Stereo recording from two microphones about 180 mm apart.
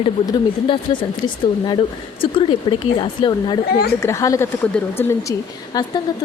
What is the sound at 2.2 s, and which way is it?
A woman's voice, 30° left (ahead or behind).